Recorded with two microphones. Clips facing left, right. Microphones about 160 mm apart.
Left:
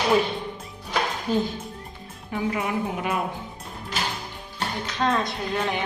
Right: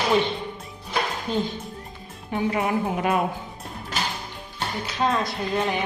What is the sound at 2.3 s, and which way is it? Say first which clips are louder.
Speech: right 2 dB; 30° right (ahead or behind).